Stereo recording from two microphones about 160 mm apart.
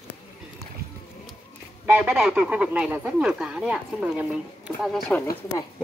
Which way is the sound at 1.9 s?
5° right (ahead or behind).